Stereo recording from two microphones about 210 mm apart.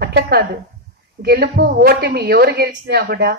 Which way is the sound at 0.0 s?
50° right (ahead or behind).